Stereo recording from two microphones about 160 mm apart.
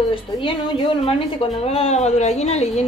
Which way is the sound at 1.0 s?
35° left (ahead or behind).